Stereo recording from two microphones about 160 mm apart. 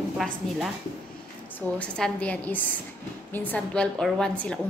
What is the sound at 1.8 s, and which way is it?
A woman's voice, 5° left (ahead or behind).